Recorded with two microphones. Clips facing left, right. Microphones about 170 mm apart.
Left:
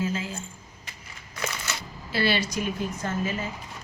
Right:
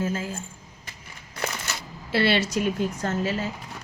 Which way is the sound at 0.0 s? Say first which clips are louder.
Right 1 dB; 45° right (ahead or behind).